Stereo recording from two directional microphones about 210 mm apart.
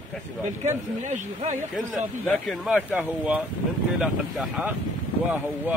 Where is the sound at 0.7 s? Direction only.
35° right (ahead or behind).